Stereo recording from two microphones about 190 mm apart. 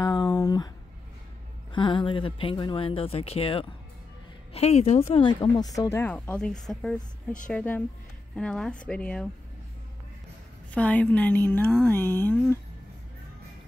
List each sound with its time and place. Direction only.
0.0 s a sound: 20° left (ahead or behind)
1.7 s speech: 25° left (ahead or behind); by 9.3 s 5° left (ahead or behind)
10.7 s speech: 5° left (ahead or behind)